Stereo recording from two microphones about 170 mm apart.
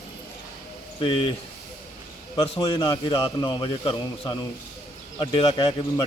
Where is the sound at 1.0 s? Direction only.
30° left (ahead or behind).